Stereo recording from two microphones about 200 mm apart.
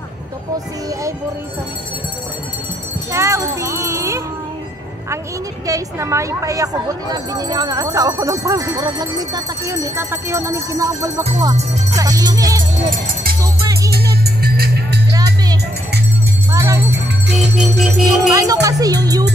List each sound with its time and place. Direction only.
3.1 s music: 15° right (ahead or behind)
5.7 s a woman's voice: 15° right (ahead or behind)
12.0 s music: 20° right (ahead or behind)
12.9 s music: 50° right (ahead or behind)
16.5 s music: 15° right (ahead or behind)
17.3 s music: centre (ahead or behind)
18.3 s speech: 15° right (ahead or behind)